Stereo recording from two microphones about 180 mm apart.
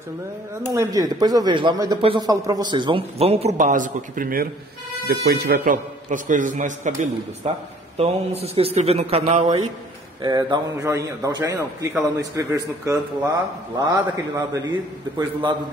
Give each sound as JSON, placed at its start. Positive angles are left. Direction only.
{"t": 0.7, "sound": "speech", "side_deg": -20}
{"t": 5.0, "sound": "speech", "side_deg": -65}
{"t": 10.2, "sound": "a man's voice", "side_deg": -20}